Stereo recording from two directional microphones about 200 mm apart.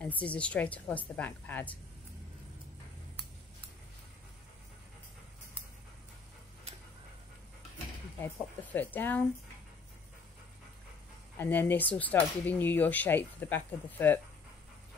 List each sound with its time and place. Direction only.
0.0 s speech: 5° left (ahead or behind)
6.7 s dog: 30° right (ahead or behind)
8.7 s speech: 10° left (ahead or behind)
11.3 s speech: 10° left (ahead or behind)